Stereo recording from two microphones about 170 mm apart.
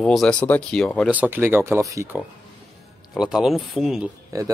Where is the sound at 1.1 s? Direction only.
10° right (ahead or behind).